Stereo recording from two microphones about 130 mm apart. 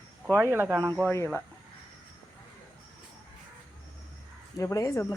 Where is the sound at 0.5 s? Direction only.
15° right (ahead or behind).